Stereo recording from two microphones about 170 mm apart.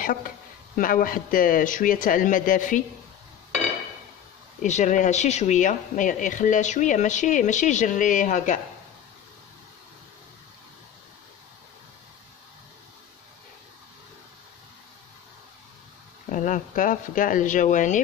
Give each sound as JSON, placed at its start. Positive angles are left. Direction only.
{"t": 0.0, "sound": "speech", "side_deg": 55}
{"t": 4.6, "sound": "speech", "side_deg": 45}
{"t": 16.3, "sound": "speech", "side_deg": 50}